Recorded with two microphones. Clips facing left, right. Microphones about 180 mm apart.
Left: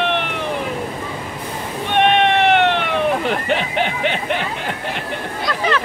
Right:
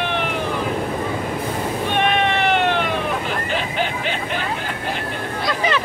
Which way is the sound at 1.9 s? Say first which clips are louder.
Left 6 dB; 65° left (ahead or behind).